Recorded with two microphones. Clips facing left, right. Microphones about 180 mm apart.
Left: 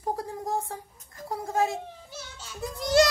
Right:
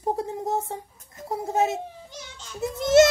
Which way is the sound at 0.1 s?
25° right (ahead or behind).